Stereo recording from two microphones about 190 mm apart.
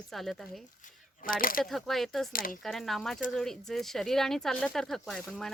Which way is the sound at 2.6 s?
Centre (ahead or behind).